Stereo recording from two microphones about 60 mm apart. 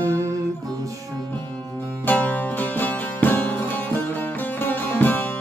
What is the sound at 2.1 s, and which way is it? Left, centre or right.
Music, left.